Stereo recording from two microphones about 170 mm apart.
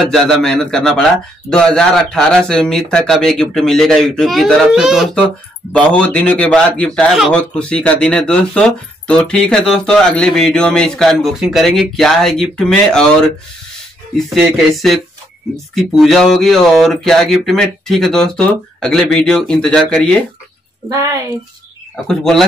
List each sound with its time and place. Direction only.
0.1 s a man's voice: 5° left (ahead or behind)
14.1 s a man's voice: centre (ahead or behind)
20.9 s a woman's voice: 20° right (ahead or behind)
22.0 s a man's voice: centre (ahead or behind)